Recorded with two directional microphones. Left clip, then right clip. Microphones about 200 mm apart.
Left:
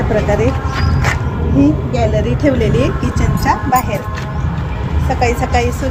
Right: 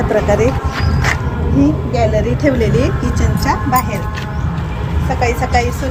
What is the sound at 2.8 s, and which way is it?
Speech, 10° left (ahead or behind).